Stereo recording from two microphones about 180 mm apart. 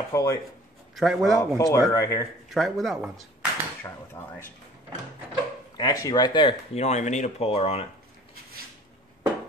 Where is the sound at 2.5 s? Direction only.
Centre (ahead or behind).